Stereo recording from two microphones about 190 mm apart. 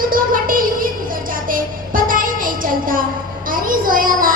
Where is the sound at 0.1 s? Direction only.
45° right (ahead or behind).